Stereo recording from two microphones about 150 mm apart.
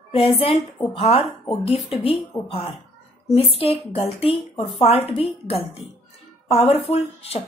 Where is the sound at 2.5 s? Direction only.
40° left (ahead or behind).